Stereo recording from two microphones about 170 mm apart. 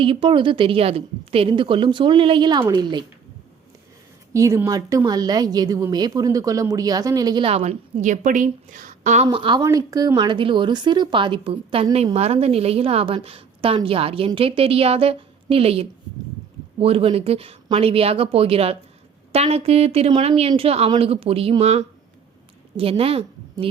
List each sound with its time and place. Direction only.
0.0 s a woman's voice: 30° right (ahead or behind)
4.4 s a woman's voice: 20° right (ahead or behind); by 23.6 s 35° right (ahead or behind)